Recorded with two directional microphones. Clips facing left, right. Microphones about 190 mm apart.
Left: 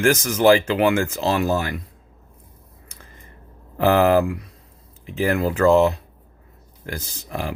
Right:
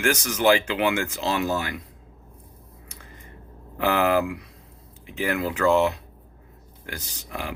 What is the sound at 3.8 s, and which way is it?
A man's voice, 40° left (ahead or behind).